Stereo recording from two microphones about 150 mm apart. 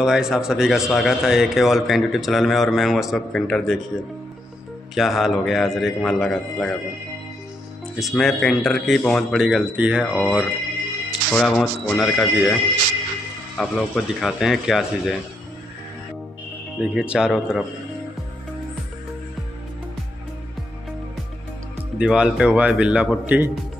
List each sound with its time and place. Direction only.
0.0 s a man's voice: 5° right (ahead or behind)
4.9 s a man's voice: centre (ahead or behind)
7.9 s a man's voice: centre (ahead or behind)
11.3 s a man's voice: 5° left (ahead or behind)
13.6 s a man's voice: 5° left (ahead or behind)
16.7 s a man's voice: 5° right (ahead or behind)
21.9 s speech: 5° right (ahead or behind)